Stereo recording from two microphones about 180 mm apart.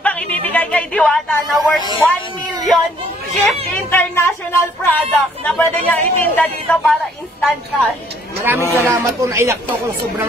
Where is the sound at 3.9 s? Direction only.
15° left (ahead or behind).